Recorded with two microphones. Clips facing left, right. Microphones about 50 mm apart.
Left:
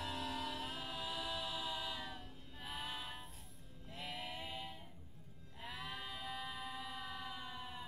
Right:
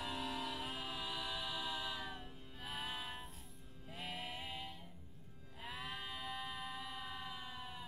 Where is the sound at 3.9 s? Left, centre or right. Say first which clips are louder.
Even; centre.